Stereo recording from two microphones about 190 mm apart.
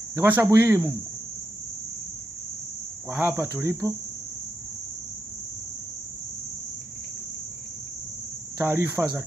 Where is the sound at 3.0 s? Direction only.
10° right (ahead or behind).